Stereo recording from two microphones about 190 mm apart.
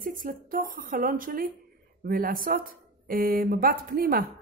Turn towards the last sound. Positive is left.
turn(degrees=-50)  # may be behind; listen again after turning